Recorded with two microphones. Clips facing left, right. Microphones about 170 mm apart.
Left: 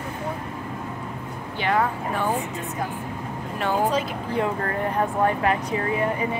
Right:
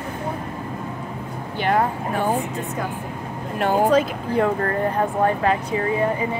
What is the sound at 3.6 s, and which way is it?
Speech, 45° right (ahead or behind).